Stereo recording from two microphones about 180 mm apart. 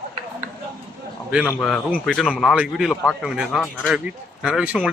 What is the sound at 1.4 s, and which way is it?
Speech, 5° left (ahead or behind).